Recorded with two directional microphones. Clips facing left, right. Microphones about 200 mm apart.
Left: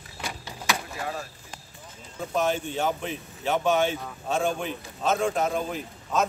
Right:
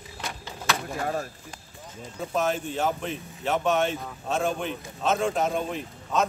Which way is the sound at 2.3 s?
Centre (ahead or behind).